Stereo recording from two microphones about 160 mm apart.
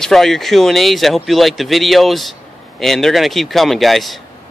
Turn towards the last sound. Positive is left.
turn(degrees=0)  # may be behind; listen again after turning